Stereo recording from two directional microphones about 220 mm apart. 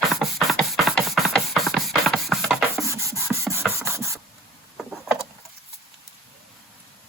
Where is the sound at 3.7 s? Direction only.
10° right (ahead or behind).